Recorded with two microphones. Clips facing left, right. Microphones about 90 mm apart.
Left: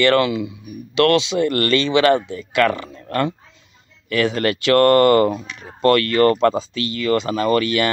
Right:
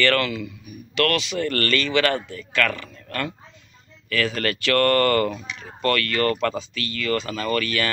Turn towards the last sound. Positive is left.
turn(degrees=25)  # may be behind; listen again after turning